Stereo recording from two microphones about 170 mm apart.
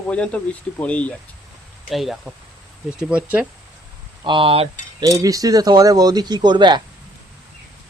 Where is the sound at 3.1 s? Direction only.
10° right (ahead or behind).